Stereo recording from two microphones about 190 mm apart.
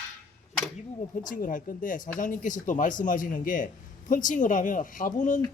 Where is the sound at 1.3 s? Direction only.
45° left (ahead or behind).